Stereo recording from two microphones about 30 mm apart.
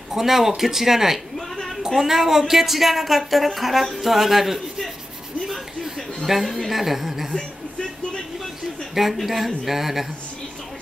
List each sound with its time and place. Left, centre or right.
0.1 s a man's voice: centre
6.2 s speech: centre
9.1 s a man's voice: centre